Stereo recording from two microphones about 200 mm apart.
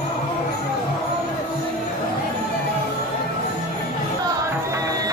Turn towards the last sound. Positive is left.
turn(degrees=-20)  # may be behind; listen again after turning